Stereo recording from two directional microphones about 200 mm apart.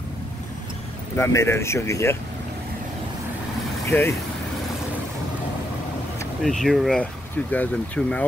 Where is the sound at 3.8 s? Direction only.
10° left (ahead or behind).